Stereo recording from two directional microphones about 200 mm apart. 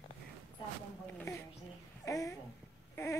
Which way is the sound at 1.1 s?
15° left (ahead or behind).